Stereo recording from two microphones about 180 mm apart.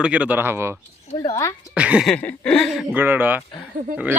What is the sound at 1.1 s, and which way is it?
Speech, 20° left (ahead or behind).